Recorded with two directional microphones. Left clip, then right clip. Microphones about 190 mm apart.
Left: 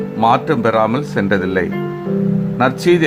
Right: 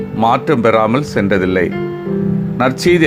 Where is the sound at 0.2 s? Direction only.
15° right (ahead or behind).